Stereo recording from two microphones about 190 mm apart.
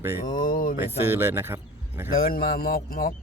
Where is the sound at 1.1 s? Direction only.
10° right (ahead or behind).